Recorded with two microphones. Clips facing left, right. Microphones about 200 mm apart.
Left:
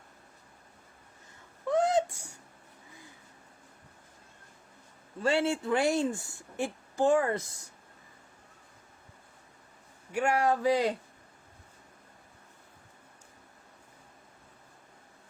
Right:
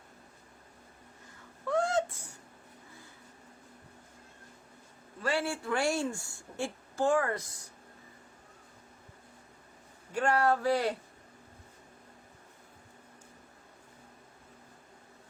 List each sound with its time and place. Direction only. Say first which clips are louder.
1.6 s a sound: left 3 dB; 20° left (ahead or behind)
5.2 s a woman's voice: left 5 dB; 25° left (ahead or behind)
10.1 s speech: even; 10° left (ahead or behind)